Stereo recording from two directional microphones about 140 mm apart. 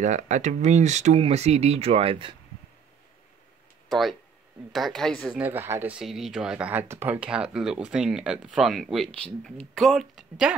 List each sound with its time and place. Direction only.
0.0 s speech: 60° right (ahead or behind); by 2.3 s 40° right (ahead or behind)
3.9 s speech: centre (ahead or behind)
5.4 s speech: 15° right (ahead or behind); by 10.5 s centre (ahead or behind)